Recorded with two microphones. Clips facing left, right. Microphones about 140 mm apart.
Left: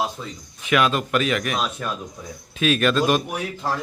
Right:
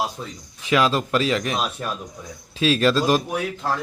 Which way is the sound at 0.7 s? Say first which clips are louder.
Right 1 dB; 30° right (ahead or behind).